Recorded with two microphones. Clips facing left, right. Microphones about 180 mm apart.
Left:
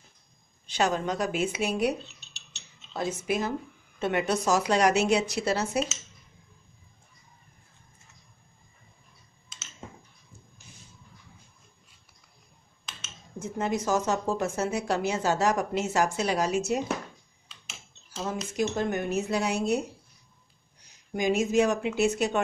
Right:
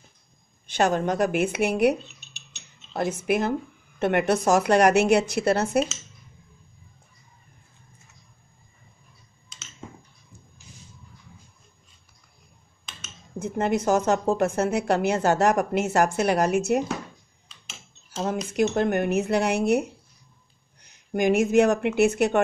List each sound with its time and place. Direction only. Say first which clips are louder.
0.7 s a woman's voice: right 4 dB; 50° right (ahead or behind)
13.4 s a woman's voice: right 5 dB; 60° right (ahead or behind)
18.2 s a woman's voice: right 5 dB; 65° right (ahead or behind)